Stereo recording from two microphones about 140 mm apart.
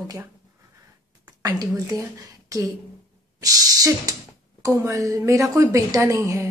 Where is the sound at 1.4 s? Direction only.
25° right (ahead or behind).